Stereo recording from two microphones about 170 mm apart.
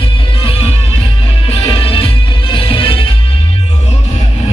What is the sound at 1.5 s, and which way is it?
Music, 30° left (ahead or behind).